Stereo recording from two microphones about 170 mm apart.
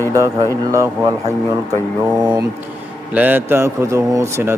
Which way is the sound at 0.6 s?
20° right (ahead or behind).